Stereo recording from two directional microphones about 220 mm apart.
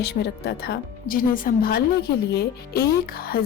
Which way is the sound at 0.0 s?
45° left (ahead or behind).